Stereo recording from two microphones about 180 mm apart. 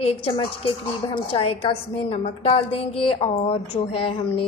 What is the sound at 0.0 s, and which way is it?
A woman's voice, 35° left (ahead or behind).